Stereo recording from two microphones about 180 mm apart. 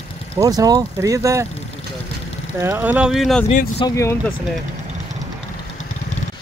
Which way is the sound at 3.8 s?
20° left (ahead or behind).